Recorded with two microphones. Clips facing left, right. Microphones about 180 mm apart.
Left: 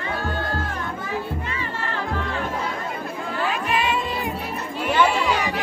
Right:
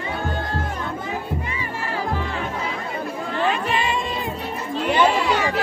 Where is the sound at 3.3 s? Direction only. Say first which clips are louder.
Right 2 dB; centre (ahead or behind).